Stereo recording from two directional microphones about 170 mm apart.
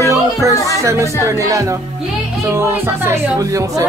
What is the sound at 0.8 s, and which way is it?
Speech, 20° right (ahead or behind).